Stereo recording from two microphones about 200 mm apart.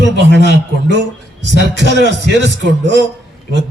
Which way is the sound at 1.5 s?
60° left (ahead or behind).